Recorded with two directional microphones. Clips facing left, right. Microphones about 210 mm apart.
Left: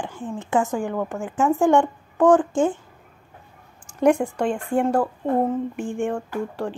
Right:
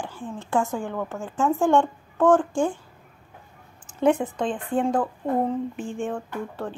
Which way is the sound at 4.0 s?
10° left (ahead or behind).